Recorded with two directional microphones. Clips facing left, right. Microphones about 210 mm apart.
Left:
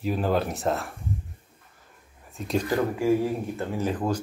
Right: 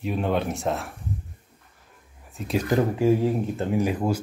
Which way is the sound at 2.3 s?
Centre (ahead or behind).